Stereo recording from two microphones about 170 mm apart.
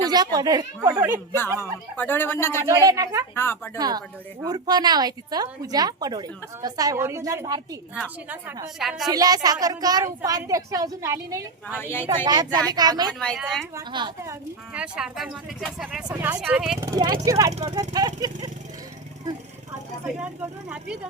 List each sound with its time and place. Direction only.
0.0 s a woman's voice: 25° right (ahead or behind)
2.0 s speech: 10° left (ahead or behind)
2.6 s a woman's voice: 15° right (ahead or behind)
3.3 s speech: 15° left (ahead or behind)
3.8 s a woman's voice: 25° right (ahead or behind)
8.8 s speech: centre (ahead or behind)
9.0 s a woman's voice: 20° right (ahead or behind)
11.8 s speech: 15° left (ahead or behind)
12.0 s a woman's voice: 25° right (ahead or behind)
13.1 s speech: centre (ahead or behind)
13.7 s a woman's voice: 25° right (ahead or behind)
14.2 s speech: 10° right (ahead or behind)
16.8 s a woman's voice: 25° right (ahead or behind)
20.1 s speech: 5° right (ahead or behind)